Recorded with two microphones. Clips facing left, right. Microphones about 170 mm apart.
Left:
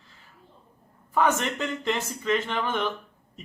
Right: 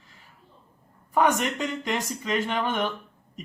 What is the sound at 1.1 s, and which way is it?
Speech, 15° right (ahead or behind).